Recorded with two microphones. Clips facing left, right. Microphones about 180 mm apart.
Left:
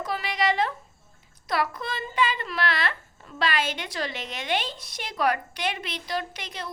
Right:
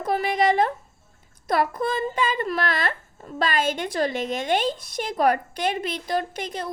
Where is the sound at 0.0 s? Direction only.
50° right (ahead or behind).